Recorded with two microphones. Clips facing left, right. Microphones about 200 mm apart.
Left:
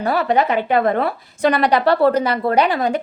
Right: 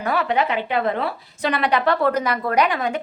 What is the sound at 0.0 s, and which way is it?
A woman's voice, 35° left (ahead or behind).